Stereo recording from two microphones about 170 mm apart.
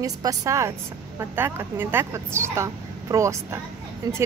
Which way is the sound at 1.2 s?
15° right (ahead or behind).